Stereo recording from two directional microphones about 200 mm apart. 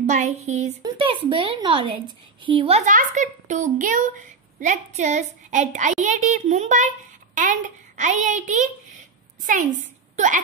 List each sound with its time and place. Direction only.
0.0 s a woman's voice: 40° right (ahead or behind)